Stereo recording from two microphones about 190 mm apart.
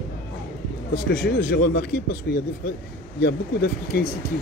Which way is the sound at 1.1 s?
55° left (ahead or behind).